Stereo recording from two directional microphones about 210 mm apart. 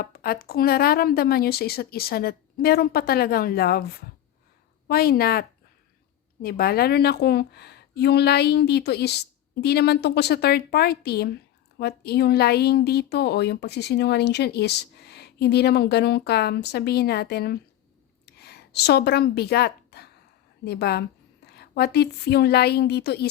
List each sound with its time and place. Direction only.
0.0 s a woman's voice: 45° left (ahead or behind)
18.3 s a sound: 50° left (ahead or behind)
20.7 s a woman's voice: 50° left (ahead or behind)